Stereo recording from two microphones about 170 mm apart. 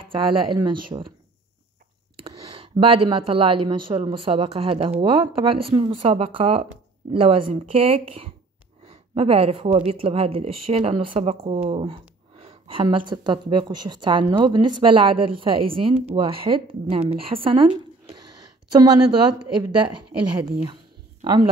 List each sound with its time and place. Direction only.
0.0 s speech: 30° right (ahead or behind)
2.2 s speech: 35° right (ahead or behind)